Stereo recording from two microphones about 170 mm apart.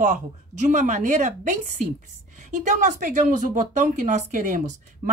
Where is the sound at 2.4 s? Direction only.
45° right (ahead or behind).